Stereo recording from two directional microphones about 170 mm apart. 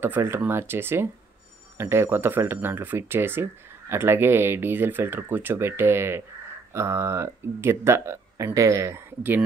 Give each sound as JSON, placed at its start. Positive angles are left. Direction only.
{"t": 0.0, "sound": "speech", "side_deg": -15}